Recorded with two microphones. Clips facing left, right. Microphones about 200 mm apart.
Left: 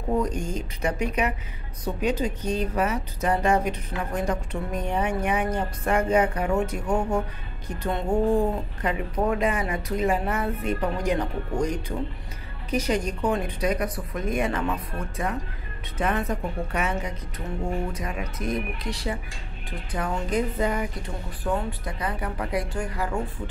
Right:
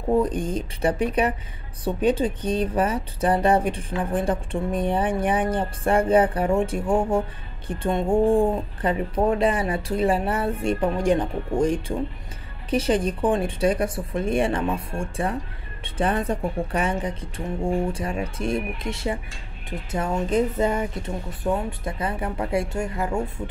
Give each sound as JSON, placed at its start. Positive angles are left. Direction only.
{"t": 0.1, "sound": "speech", "side_deg": -30}